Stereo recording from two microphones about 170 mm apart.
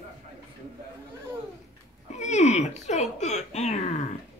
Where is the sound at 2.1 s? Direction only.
45° left (ahead or behind).